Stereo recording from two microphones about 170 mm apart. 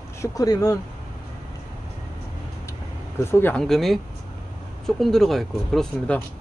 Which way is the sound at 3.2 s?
15° left (ahead or behind).